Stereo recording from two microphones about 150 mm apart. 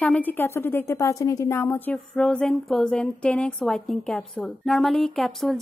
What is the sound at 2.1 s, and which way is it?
A woman's voice, 5° left (ahead or behind).